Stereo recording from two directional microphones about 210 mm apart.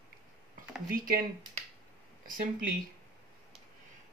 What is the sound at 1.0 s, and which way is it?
Speech, 40° right (ahead or behind).